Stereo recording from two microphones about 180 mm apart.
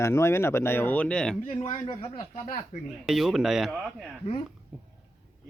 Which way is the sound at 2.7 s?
40° left (ahead or behind).